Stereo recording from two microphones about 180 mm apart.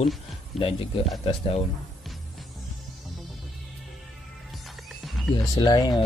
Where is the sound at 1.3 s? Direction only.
35° left (ahead or behind).